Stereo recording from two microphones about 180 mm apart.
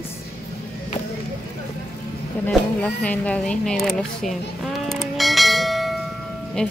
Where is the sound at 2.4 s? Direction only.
10° left (ahead or behind).